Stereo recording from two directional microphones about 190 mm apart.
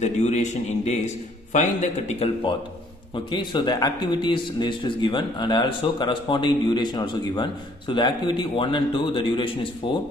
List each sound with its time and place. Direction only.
0.0 s a man's voice: 35° left (ahead or behind)